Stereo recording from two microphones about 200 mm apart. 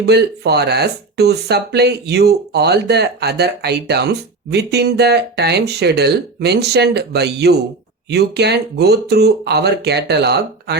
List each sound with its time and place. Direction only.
0.0 s speech: 55° right (ahead or behind)